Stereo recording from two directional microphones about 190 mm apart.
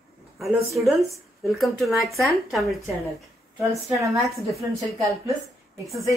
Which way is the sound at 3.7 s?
15° right (ahead or behind).